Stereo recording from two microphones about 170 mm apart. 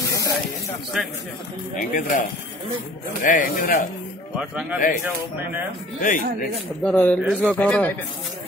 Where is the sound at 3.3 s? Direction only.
55° left (ahead or behind).